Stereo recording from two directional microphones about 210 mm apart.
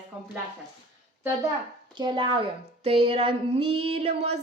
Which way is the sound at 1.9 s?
20° right (ahead or behind).